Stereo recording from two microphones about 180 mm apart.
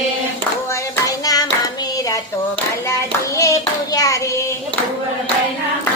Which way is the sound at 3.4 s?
20° left (ahead or behind).